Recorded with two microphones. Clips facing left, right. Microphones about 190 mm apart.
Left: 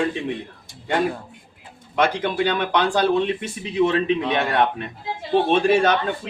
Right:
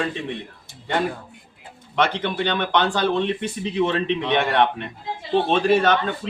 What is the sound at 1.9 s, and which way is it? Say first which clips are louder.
A man's voice: left 2 dB; 10° left (ahead or behind).